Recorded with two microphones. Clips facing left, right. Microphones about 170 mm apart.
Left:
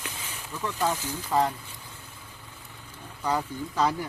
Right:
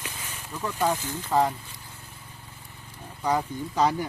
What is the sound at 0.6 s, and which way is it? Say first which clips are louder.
Speech: right 2 dB; 15° right (ahead or behind).